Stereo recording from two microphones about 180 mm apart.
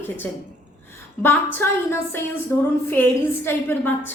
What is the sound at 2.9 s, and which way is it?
A woman's voice, 10° left (ahead or behind).